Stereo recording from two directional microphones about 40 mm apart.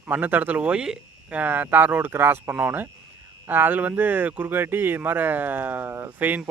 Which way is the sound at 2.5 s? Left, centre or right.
Right.